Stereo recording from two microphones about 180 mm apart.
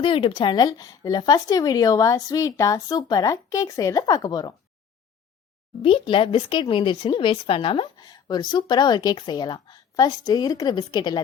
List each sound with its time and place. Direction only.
0.0 s speech: 30° left (ahead or behind)
5.8 s speech: 30° left (ahead or behind)